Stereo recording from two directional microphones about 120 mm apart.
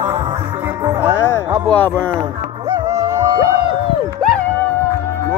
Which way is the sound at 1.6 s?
15° left (ahead or behind).